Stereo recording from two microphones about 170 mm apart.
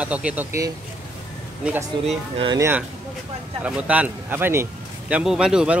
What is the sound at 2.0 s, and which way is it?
Speech, 30° right (ahead or behind).